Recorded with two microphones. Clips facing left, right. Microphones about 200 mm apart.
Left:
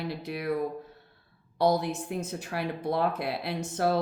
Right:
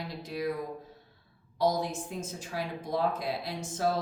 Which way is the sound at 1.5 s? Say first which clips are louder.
Left 3 dB; 65° left (ahead or behind).